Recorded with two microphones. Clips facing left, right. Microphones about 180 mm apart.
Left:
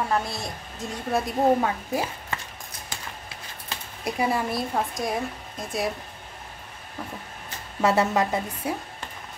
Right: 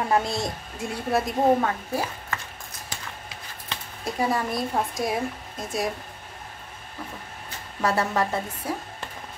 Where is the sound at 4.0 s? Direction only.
10° left (ahead or behind).